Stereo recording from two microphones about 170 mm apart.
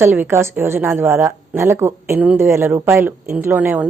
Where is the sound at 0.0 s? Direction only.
15° right (ahead or behind).